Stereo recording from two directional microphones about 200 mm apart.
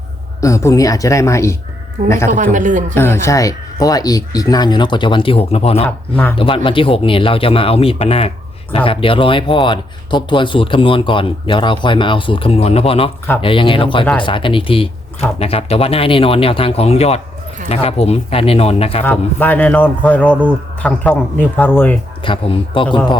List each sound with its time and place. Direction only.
0.4 s a man's voice: 15° left (ahead or behind)
2.3 s speech: 40° right (ahead or behind)
2.9 s speech: 10° left (ahead or behind); by 19.0 s 30° left (ahead or behind)
19.0 s a man's voice: 10° left (ahead or behind)
20.3 s speech: 10° right (ahead or behind)
20.8 s a man's voice: 10° left (ahead or behind)
22.2 s speech: 25° left (ahead or behind)